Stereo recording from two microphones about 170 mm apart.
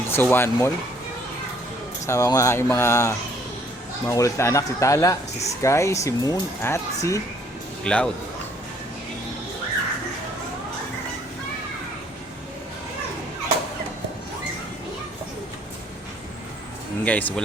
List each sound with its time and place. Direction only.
0.1 s speech: 10° left (ahead or behind)
2.0 s speech: 20° left (ahead or behind)
7.9 s speech: 5° left (ahead or behind)
17.0 s speech: 10° left (ahead or behind)